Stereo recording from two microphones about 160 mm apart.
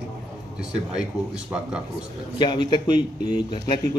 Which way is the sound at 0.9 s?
5° right (ahead or behind).